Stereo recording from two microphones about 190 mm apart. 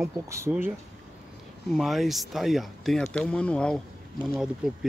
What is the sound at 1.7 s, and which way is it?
Speech, centre (ahead or behind).